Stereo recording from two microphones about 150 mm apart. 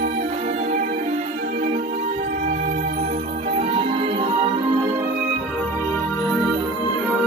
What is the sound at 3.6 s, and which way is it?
Music, 45° right (ahead or behind).